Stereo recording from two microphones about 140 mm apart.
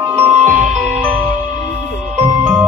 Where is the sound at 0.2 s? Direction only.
15° right (ahead or behind).